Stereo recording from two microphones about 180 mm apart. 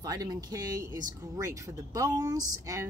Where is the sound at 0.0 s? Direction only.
20° right (ahead or behind).